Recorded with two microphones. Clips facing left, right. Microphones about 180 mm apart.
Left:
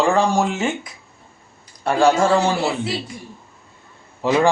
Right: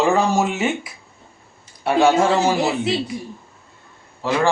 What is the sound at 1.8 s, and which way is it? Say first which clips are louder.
Speech: right 1 dB; 5° right (ahead or behind).